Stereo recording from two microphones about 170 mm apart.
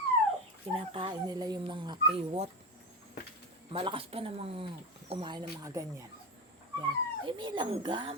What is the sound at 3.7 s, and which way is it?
Speech, 30° right (ahead or behind).